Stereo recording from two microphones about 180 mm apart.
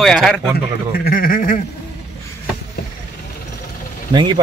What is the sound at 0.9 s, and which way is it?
Speech, 55° left (ahead or behind).